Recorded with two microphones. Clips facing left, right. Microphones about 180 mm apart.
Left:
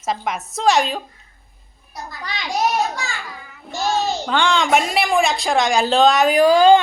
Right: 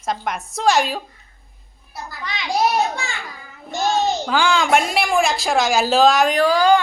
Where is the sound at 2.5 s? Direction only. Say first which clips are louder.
Right 1 dB; 30° right (ahead or behind).